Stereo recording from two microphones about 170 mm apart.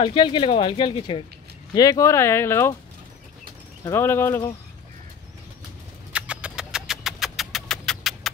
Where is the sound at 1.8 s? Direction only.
20° left (ahead or behind).